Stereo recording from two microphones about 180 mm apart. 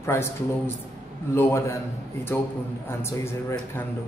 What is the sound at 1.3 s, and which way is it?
Speech, 15° left (ahead or behind).